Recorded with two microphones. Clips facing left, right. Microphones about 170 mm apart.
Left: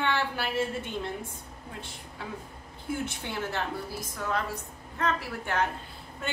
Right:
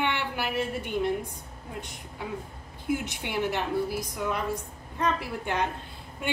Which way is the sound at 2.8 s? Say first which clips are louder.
Right 3 dB; 15° right (ahead or behind).